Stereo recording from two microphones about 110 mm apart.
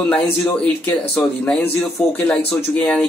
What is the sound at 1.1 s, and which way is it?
Speech, 10° left (ahead or behind).